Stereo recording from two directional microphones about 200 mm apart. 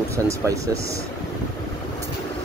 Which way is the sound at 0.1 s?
15° right (ahead or behind).